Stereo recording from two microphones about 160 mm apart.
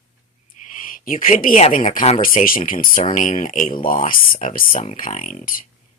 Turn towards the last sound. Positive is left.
turn(degrees=55)  # may be behind; listen again after turning